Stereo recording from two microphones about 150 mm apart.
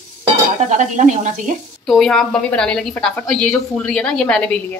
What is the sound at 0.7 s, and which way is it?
Speech, 55° right (ahead or behind).